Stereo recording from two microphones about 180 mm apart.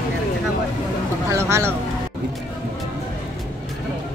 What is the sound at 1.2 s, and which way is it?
Speech, 15° right (ahead or behind).